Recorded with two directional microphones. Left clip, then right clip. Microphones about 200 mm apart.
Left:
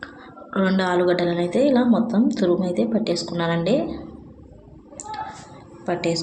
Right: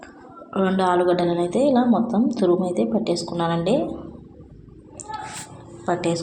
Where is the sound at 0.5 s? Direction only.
5° left (ahead or behind).